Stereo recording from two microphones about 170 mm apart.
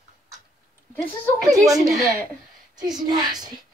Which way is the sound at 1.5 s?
20° right (ahead or behind).